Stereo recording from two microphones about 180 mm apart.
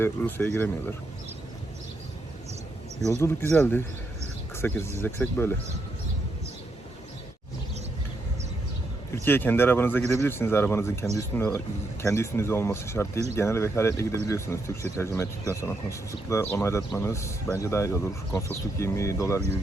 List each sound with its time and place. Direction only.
0.0 s speech: 10° left (ahead or behind)
3.1 s speech: 15° left (ahead or behind)
9.1 s speech: 10° left (ahead or behind)